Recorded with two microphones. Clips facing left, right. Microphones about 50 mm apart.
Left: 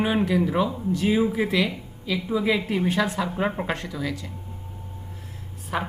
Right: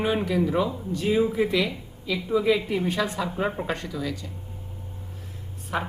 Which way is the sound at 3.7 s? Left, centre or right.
Centre.